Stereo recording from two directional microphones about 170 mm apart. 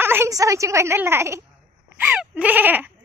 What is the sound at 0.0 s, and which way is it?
A woman's voice, 15° right (ahead or behind).